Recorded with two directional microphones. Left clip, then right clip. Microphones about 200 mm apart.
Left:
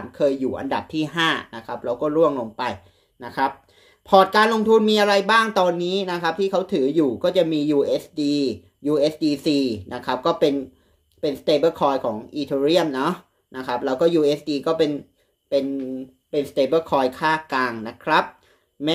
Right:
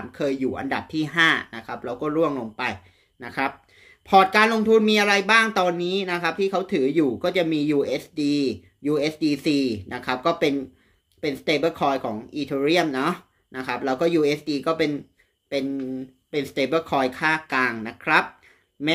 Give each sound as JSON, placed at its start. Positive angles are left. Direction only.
{"t": 0.1, "sound": "speech", "side_deg": -10}
{"t": 11.1, "sound": "speech", "side_deg": -5}
{"t": 16.3, "sound": "speech", "side_deg": -15}